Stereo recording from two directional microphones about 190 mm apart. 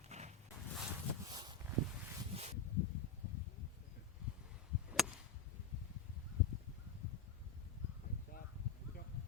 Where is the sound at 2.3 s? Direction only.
35° right (ahead or behind).